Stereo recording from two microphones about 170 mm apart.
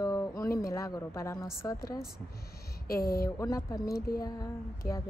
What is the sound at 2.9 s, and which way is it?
Speech, 60° left (ahead or behind).